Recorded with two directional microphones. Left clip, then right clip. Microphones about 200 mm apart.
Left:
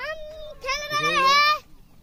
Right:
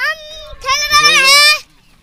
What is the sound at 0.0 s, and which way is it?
Children playing, 30° right (ahead or behind).